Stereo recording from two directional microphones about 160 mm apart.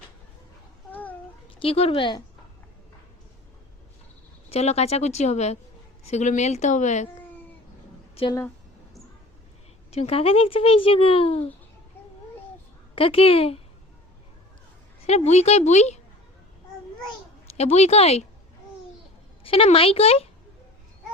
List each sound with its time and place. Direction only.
0.9 s a sound: 10° left (ahead or behind)
1.5 s a child's voice: 40° left (ahead or behind)
4.4 s speech: 40° left (ahead or behind)
9.9 s a child's voice: 40° left (ahead or behind)
13.0 s a child's voice: 35° left (ahead or behind)
15.0 s speech: 40° left (ahead or behind)
17.6 s a child's voice: 40° left (ahead or behind)
19.5 s a child's voice: 35° left (ahead or behind)